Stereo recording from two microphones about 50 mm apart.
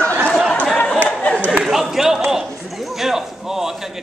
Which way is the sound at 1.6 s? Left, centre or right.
Centre.